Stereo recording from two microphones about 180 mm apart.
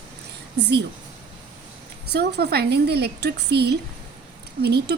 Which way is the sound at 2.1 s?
65° right (ahead or behind).